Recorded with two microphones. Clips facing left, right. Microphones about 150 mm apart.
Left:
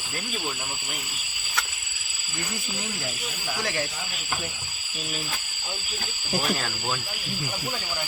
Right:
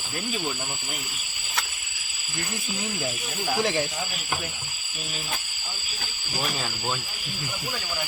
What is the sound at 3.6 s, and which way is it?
Speech, 20° right (ahead or behind).